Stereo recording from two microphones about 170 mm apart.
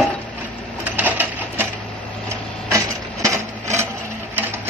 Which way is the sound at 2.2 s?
15° right (ahead or behind).